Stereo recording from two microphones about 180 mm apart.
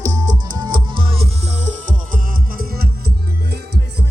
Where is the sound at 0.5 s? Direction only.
25° right (ahead or behind); by 3.1 s 55° right (ahead or behind).